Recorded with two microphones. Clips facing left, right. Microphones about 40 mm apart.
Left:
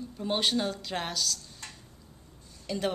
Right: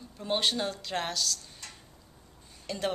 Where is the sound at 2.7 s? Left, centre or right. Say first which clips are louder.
Left 3 dB; centre.